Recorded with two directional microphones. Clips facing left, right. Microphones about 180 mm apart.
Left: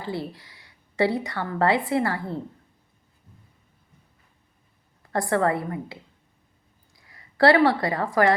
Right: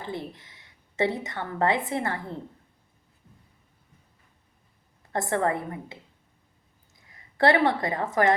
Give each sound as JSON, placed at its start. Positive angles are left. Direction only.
{"t": 0.0, "sound": "a woman's voice", "side_deg": -20}
{"t": 5.1, "sound": "a woman's voice", "side_deg": -20}
{"t": 7.1, "sound": "a woman's voice", "side_deg": -20}